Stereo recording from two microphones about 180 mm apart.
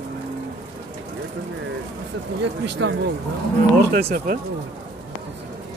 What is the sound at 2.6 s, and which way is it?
Speech, 80° right.